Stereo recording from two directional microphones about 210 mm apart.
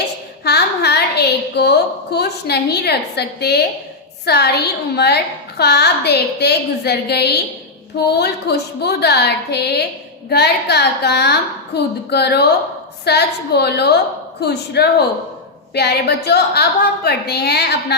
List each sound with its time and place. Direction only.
0.4 s a woman's voice: 50° left (ahead or behind)